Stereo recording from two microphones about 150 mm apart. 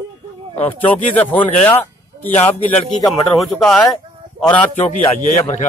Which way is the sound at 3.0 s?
Centre (ahead or behind).